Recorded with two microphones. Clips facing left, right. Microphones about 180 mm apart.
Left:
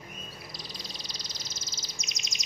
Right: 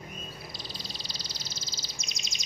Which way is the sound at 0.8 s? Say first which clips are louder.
Right 1 dB; 30° right (ahead or behind).